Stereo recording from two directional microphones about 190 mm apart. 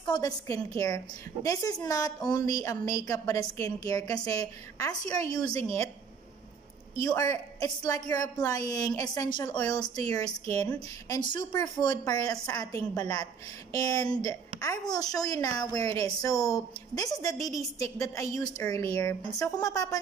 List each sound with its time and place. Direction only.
0.0 s a woman's voice: 20° left (ahead or behind)
5.5 s a woman's voice: 30° right (ahead or behind)
7.0 s a woman's voice: 20° left (ahead or behind)
11.3 s a woman's voice: 20° left (ahead or behind)